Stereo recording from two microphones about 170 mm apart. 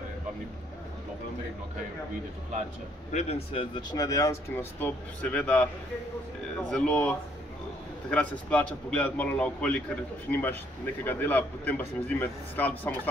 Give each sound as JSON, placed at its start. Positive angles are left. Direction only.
{"t": 3.1, "sound": "speech", "side_deg": 40}
{"t": 3.9, "sound": "a man's voice", "side_deg": 20}
{"t": 6.7, "sound": "a man's voice", "side_deg": 5}